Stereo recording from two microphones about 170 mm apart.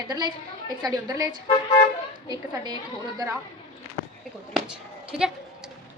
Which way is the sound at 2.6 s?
25° right (ahead or behind).